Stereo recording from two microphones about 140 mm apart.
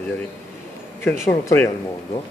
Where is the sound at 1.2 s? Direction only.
15° left (ahead or behind).